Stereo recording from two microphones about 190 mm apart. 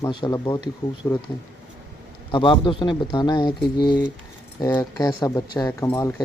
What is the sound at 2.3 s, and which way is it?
Speech, 25° left (ahead or behind).